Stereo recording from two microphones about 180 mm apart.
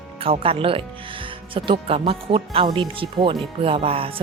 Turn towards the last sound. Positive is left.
turn(degrees=-30)  # may be behind; listen again after turning